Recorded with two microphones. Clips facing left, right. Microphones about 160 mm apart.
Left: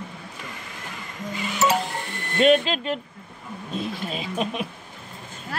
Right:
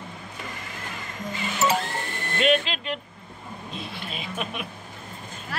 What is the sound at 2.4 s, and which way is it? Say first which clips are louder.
Speech: left 5 dB; 40° left (ahead or behind).